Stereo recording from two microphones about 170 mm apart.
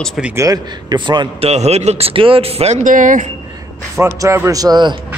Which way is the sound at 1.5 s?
40° right (ahead or behind).